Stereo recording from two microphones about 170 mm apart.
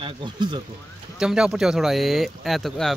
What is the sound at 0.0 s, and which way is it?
Speech, 25° right (ahead or behind).